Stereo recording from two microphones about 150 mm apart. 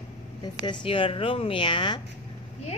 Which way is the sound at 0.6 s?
35° left (ahead or behind).